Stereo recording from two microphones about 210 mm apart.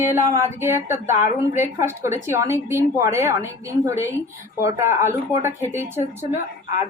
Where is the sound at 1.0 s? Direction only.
35° left (ahead or behind).